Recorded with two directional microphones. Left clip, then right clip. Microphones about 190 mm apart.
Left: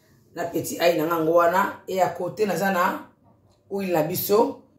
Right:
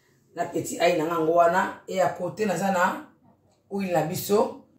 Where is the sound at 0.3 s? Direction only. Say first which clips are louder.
Left 1 dB; 30° left (ahead or behind).